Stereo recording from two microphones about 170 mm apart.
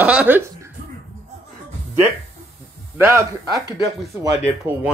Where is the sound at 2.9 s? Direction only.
15° right (ahead or behind).